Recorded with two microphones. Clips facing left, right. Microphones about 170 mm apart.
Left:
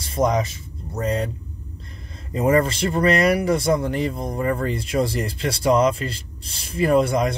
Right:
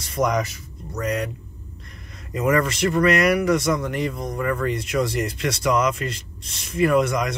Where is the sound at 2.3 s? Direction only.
30° left (ahead or behind).